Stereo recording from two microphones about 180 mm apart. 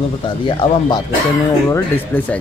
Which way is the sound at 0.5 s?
25° left (ahead or behind).